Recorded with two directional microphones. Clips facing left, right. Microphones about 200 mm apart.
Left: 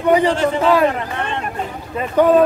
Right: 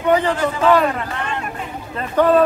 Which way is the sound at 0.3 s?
25° left (ahead or behind).